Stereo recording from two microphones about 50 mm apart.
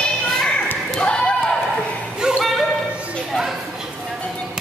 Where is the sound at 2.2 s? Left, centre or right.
Centre.